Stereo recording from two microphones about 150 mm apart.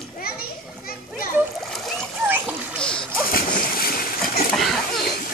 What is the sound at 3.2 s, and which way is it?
Splash, 70° left (ahead or behind).